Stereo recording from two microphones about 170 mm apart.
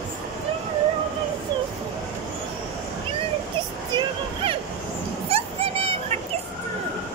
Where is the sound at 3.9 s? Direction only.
30° right (ahead or behind).